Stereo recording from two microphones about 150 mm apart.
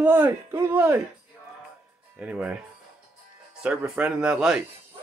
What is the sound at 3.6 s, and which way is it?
Speech, 5° right (ahead or behind).